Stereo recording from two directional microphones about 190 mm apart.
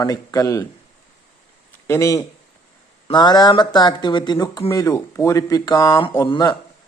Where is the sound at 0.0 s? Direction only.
20° left (ahead or behind).